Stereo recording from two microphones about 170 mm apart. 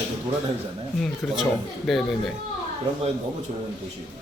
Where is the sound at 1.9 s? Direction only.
Centre (ahead or behind).